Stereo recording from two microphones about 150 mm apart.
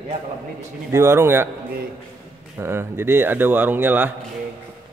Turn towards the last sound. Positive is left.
turn(degrees=-10)  # may be behind; listen again after turning